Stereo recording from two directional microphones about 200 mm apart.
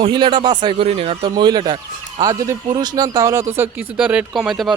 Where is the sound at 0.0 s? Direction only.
25° right (ahead or behind).